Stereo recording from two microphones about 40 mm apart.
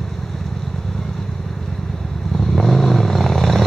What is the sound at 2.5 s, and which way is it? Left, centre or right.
Vehicle, centre.